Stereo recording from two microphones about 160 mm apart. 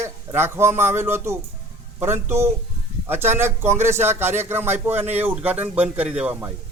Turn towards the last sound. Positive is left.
turn(degrees=-10)  # may be behind; listen again after turning